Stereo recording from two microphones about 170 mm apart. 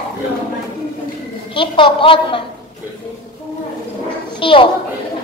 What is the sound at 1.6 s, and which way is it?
Speech, 30° left (ahead or behind).